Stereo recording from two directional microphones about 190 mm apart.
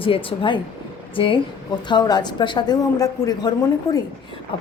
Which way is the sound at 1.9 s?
20° left (ahead or behind).